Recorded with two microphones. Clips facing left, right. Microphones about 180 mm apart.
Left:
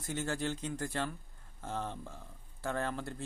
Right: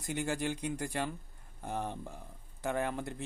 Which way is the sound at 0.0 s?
15° right (ahead or behind).